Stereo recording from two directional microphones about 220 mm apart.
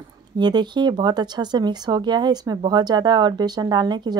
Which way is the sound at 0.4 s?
20° right (ahead or behind).